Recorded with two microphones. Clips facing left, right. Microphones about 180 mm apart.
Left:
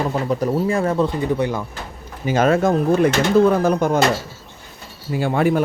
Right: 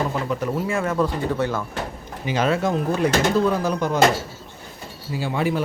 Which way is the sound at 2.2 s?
50° left (ahead or behind).